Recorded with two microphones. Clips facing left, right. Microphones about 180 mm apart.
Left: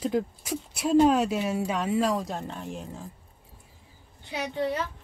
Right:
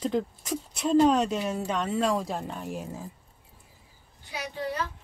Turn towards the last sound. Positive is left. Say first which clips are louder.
# left 4 dB
turn(degrees=25)  # may be behind; listen again after turning